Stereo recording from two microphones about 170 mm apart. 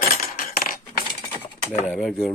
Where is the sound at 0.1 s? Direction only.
55° left (ahead or behind).